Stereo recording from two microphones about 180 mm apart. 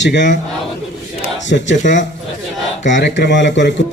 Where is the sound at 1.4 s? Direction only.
80° left.